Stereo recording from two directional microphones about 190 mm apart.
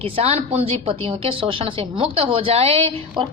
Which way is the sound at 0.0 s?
30° right (ahead or behind).